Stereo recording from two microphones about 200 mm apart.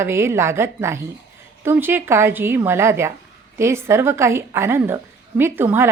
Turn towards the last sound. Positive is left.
turn(degrees=-10)  # may be behind; listen again after turning